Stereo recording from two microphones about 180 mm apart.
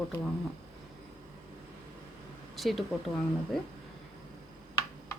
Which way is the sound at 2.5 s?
Centre (ahead or behind).